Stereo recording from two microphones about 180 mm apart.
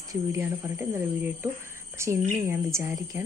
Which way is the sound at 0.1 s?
15° right (ahead or behind).